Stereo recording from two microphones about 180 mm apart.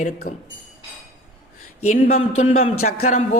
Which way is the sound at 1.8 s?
40° left (ahead or behind).